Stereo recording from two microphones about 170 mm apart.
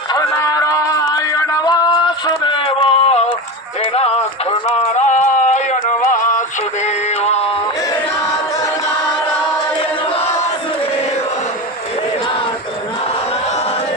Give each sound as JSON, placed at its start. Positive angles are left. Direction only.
{"t": 0.1, "sound": "music", "side_deg": 20}
{"t": 3.9, "sound": "speech", "side_deg": 35}
{"t": 6.1, "sound": "synthetic singing", "side_deg": 50}
{"t": 6.8, "sound": "synthetic singing", "side_deg": 40}